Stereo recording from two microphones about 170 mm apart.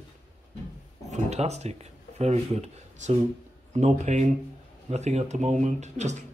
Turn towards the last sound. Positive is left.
turn(degrees=-45)  # may be behind; listen again after turning